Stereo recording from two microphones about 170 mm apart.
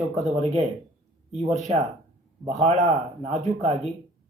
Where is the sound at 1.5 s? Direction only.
40° right (ahead or behind).